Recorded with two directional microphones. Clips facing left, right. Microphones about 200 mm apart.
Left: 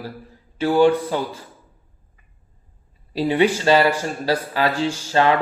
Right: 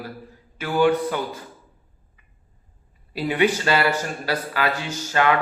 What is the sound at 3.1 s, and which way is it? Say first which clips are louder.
A man's voice: left 3 dB; 30° left (ahead or behind).